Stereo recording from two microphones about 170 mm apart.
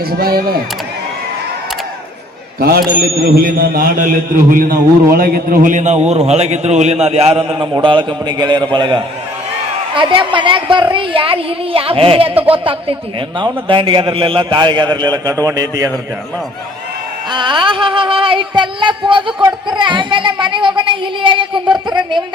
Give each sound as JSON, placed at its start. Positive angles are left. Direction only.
{"t": 0.2, "sound": "a man's voice", "side_deg": -65}
{"t": 2.6, "sound": "a man's voice", "side_deg": -60}
{"t": 13.4, "sound": "speech", "side_deg": -30}
{"t": 17.3, "sound": "speech", "side_deg": -30}